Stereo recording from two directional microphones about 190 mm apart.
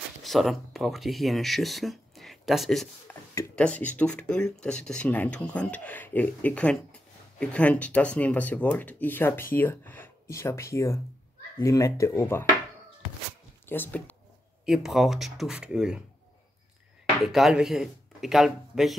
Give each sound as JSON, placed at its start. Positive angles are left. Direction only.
{"t": 0.2, "sound": "speech", "side_deg": 0}
{"t": 13.7, "sound": "speech", "side_deg": 10}
{"t": 14.7, "sound": "speech", "side_deg": 0}
{"t": 17.2, "sound": "speech", "side_deg": 0}